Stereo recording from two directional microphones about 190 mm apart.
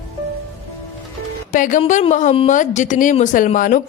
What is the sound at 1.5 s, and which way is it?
A woman's voice, 45° left (ahead or behind).